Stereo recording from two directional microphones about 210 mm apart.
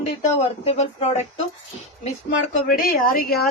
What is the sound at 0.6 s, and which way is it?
Speech, 30° left (ahead or behind).